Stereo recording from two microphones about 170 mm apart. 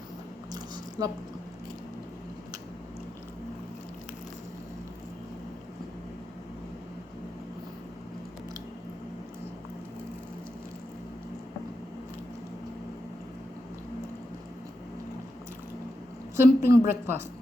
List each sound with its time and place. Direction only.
0.5 s squish: 20° right (ahead or behind)
16.4 s a woman's voice: 15° right (ahead or behind)